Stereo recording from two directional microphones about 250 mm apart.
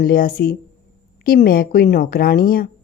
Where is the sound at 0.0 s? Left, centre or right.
Left.